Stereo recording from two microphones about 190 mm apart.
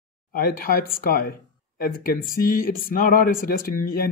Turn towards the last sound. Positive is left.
turn(degrees=50)  # may be behind; listen again after turning